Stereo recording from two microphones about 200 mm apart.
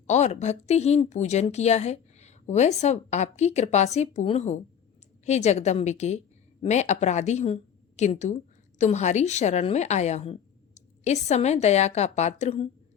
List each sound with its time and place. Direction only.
0.1 s a woman's voice: 35° left (ahead or behind)